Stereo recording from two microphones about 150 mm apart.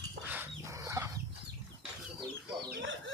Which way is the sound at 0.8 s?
20° right (ahead or behind).